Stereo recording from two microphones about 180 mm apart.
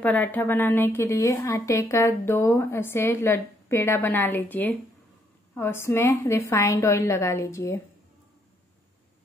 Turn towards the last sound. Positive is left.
turn(degrees=15)  # may be behind; listen again after turning